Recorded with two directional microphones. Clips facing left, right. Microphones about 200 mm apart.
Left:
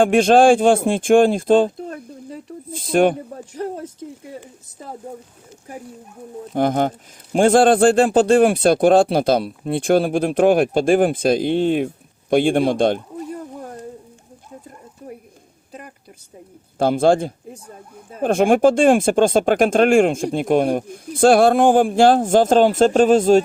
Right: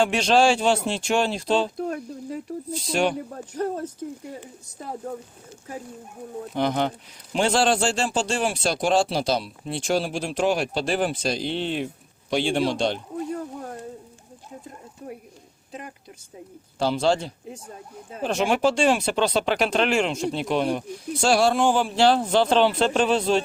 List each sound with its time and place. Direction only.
0.0 s speech: 50° left (ahead or behind)
1.7 s a sound: 5° right (ahead or behind)
2.7 s speech: 50° left (ahead or behind)
3.5 s speech: 10° left (ahead or behind)
6.5 s speech: 50° left (ahead or behind)
16.7 s speech: 50° left (ahead or behind)